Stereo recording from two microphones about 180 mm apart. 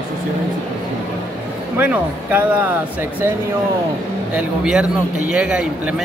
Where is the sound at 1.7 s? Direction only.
10° right (ahead or behind).